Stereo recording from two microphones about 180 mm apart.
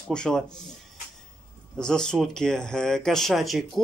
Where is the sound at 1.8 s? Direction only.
5° left (ahead or behind).